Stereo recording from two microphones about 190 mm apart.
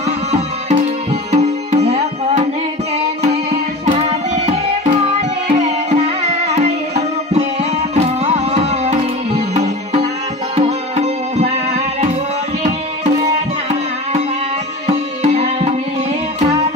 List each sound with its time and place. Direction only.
1.3 s tabla: 35° right (ahead or behind)
3.8 s tabla: 35° right (ahead or behind)
5.5 s music: 40° right (ahead or behind)
7.9 s music: 35° right (ahead or behind)
14.9 s music: 35° right (ahead or behind)